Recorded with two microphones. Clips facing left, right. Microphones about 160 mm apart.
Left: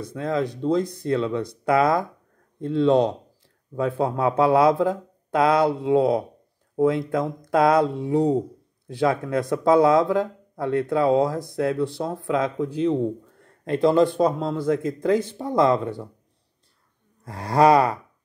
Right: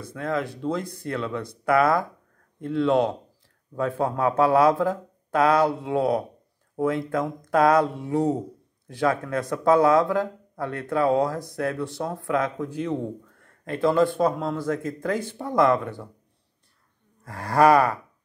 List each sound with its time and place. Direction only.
0.1 s a man's voice: 20° left (ahead or behind)
15.5 s a man's voice: 30° left (ahead or behind)
17.5 s speech: 15° left (ahead or behind)